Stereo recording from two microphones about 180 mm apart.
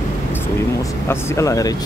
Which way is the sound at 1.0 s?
15° left (ahead or behind).